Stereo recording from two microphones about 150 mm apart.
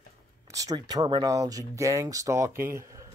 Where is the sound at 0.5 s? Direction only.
25° right (ahead or behind).